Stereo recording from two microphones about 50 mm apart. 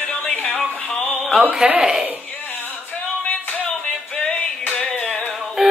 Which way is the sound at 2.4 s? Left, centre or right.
Left.